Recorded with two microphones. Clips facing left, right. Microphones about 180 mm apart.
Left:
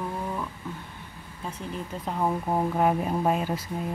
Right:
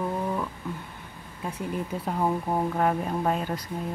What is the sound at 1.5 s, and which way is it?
Speech, 10° right (ahead or behind).